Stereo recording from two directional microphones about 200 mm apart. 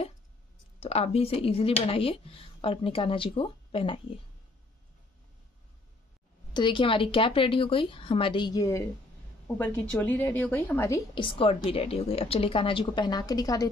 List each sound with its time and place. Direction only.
0.7 s speech: 30° left (ahead or behind)
6.5 s a woman's voice: 25° left (ahead or behind)
11.1 s speech: 25° left (ahead or behind)